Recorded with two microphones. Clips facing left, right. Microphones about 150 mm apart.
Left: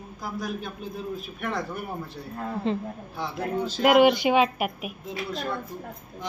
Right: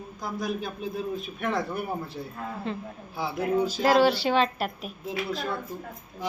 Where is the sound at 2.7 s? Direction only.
20° left (ahead or behind).